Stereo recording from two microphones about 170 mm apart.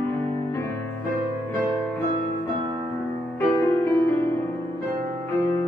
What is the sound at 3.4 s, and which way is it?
Music, 15° left (ahead or behind).